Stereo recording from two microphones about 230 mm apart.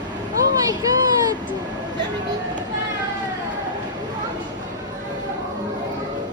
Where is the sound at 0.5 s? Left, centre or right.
Centre.